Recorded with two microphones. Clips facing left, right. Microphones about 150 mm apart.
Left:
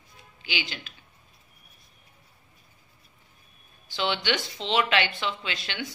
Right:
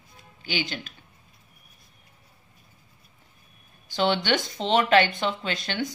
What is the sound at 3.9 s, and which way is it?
Speech, 45° right (ahead or behind).